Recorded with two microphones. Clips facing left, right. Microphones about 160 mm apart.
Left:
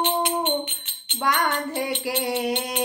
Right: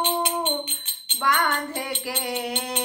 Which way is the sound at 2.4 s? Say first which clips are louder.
Left 4 dB; 15° left (ahead or behind).